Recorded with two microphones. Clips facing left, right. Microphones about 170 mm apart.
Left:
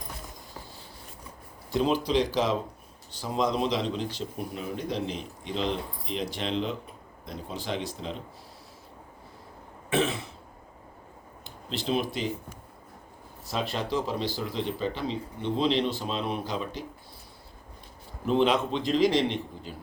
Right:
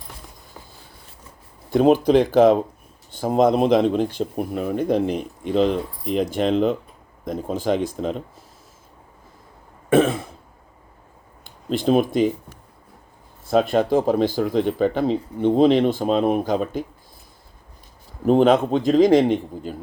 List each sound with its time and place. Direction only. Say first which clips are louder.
1.7 s speech: right 10 dB; 55° right (ahead or behind)
9.9 s throat clearing: right 10 dB; 50° right (ahead or behind)
11.4 s speech: right 11 dB; 50° right (ahead or behind)
13.5 s speech: right 12 dB; 50° right (ahead or behind)
18.3 s speech: right 8 dB; 45° right (ahead or behind)